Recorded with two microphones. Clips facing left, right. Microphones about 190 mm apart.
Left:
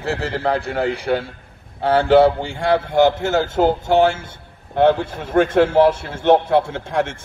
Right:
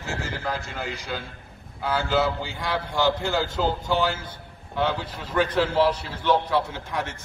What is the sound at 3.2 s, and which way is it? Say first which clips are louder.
Speech: left 6 dB; 25° left (ahead or behind).